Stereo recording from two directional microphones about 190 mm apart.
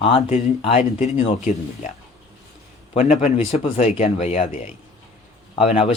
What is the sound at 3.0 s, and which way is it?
Speech, 35° left (ahead or behind).